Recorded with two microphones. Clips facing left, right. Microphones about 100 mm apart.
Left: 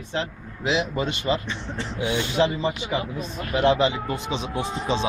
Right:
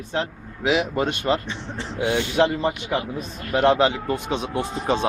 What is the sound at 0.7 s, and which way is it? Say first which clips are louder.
A man's voice: right 3 dB; 55° right (ahead or behind).